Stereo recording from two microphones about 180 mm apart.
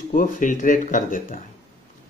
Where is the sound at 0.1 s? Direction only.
45° left (ahead or behind).